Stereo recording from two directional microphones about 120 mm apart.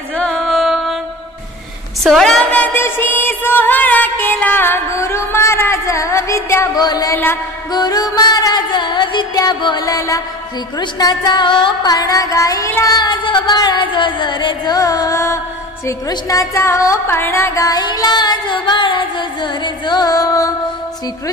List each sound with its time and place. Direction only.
0.2 s music: 5° left (ahead or behind)
2.0 s a sound: 5° left (ahead or behind); by 7.2 s 30° left (ahead or behind)
7.7 s music: 35° left (ahead or behind)
14.8 s music: 30° left (ahead or behind)